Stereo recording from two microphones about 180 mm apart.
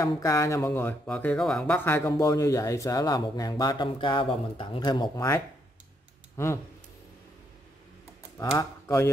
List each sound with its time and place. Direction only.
0.0 s speech: 15° left (ahead or behind)
8.4 s speech: 15° left (ahead or behind)